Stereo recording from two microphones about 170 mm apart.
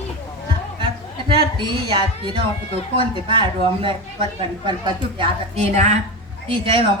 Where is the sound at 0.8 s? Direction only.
30° right (ahead or behind).